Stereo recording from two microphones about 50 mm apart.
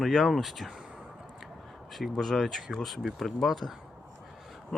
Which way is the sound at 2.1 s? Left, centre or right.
Centre.